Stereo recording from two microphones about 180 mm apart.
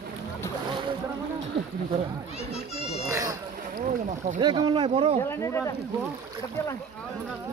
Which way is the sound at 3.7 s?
45° right (ahead or behind).